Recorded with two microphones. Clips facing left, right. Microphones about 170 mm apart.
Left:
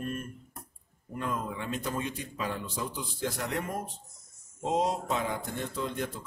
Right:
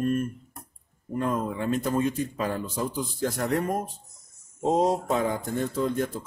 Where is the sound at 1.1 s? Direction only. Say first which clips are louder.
Right 7 dB; 40° right (ahead or behind).